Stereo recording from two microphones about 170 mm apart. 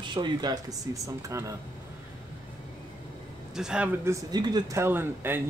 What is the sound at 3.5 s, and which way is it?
Speech, 5° right (ahead or behind).